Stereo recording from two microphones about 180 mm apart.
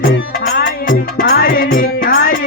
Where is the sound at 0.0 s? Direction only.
60° left (ahead or behind).